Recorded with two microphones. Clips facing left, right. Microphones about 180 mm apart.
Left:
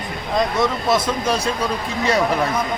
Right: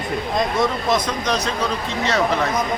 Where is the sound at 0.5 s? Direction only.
5° left (ahead or behind).